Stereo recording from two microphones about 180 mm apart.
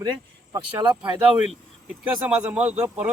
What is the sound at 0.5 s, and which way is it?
Speech, 25° right (ahead or behind).